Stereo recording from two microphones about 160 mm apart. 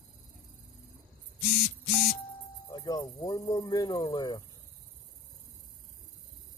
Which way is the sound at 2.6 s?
25° left (ahead or behind).